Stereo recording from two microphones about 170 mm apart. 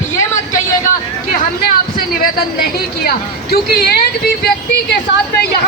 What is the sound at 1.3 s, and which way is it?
Speech, 60° left (ahead or behind).